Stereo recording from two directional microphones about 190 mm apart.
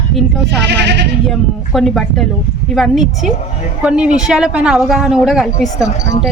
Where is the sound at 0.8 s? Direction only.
65° right (ahead or behind).